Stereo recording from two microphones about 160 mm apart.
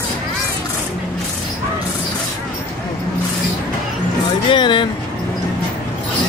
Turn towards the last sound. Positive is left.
turn(degrees=30)  # may be behind; listen again after turning